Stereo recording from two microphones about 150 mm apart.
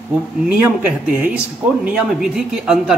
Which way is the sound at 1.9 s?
5° right (ahead or behind).